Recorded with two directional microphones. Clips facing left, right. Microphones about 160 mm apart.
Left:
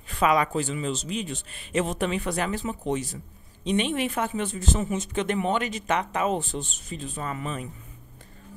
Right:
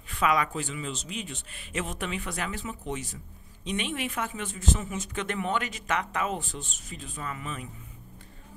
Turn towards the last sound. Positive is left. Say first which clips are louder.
# left 5 dB
turn(degrees=35)  # may be behind; listen again after turning